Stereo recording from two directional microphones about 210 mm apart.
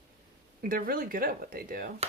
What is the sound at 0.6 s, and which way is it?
Speech, 45° right (ahead or behind).